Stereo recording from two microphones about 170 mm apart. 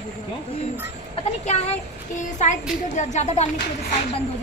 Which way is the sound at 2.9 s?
45° left (ahead or behind).